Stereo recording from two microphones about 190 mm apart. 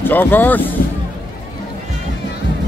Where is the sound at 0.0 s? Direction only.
10° left (ahead or behind).